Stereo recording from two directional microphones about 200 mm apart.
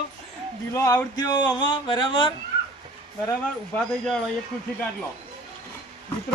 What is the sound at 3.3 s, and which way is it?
Speech, 5° left (ahead or behind).